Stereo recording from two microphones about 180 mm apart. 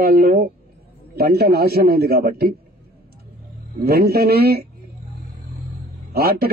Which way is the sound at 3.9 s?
60° right (ahead or behind).